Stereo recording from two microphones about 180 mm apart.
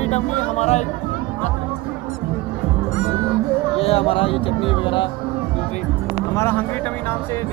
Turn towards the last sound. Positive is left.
turn(degrees=10)  # may be behind; listen again after turning